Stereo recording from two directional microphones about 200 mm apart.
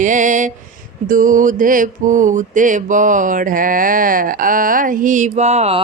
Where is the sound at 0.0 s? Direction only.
40° right (ahead or behind).